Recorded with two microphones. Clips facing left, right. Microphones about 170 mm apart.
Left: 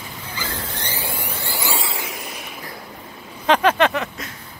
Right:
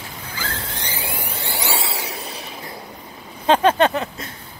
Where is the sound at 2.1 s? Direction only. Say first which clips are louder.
Right 1 dB; 35° right (ahead or behind).